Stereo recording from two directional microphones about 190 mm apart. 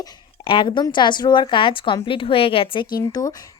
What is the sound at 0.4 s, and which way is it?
A woman's voice, 25° left (ahead or behind).